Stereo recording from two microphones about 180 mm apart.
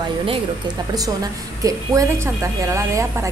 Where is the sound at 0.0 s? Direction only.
30° right (ahead or behind).